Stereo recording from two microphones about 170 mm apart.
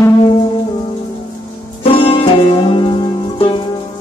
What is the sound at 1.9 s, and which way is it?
Music, 30° left (ahead or behind).